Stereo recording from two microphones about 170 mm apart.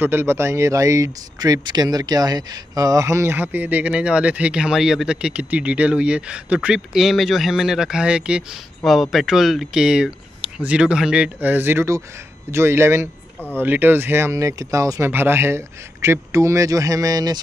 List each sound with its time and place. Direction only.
0.0 s speech: 15° right (ahead or behind)